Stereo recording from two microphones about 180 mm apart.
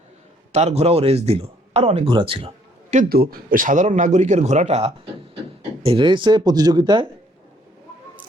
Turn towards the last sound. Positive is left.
turn(degrees=-25)  # may be behind; listen again after turning